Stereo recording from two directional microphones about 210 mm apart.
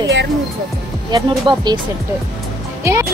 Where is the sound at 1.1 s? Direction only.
20° right (ahead or behind).